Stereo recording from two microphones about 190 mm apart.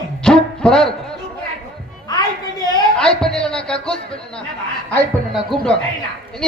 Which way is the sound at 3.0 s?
5° left (ahead or behind).